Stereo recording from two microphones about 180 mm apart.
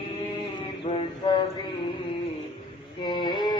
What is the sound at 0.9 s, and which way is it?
Mantra, 30° left (ahead or behind).